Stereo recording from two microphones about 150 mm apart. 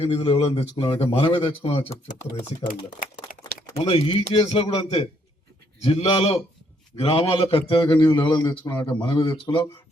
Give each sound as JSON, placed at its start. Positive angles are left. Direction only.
{"t": 0.0, "sound": "a man's voice", "side_deg": 40}
{"t": 3.3, "sound": "a sound", "side_deg": 70}
{"t": 3.8, "sound": "a man's voice", "side_deg": 40}